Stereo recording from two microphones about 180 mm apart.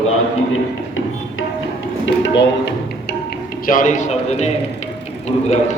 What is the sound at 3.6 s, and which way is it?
Speech, 50° left (ahead or behind).